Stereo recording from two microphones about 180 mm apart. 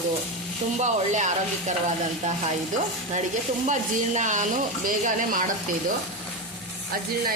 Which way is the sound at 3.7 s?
45° right (ahead or behind).